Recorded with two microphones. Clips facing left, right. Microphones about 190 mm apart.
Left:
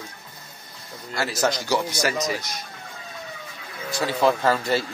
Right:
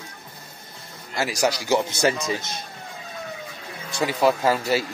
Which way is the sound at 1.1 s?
15° right (ahead or behind).